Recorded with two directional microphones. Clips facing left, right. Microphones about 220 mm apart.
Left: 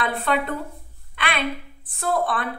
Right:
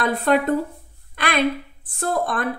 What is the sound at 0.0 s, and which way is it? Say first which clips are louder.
Speech: right 5 dB; 40° right (ahead or behind).